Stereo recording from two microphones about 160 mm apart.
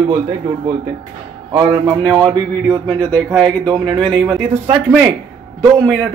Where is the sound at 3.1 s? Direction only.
5° left (ahead or behind).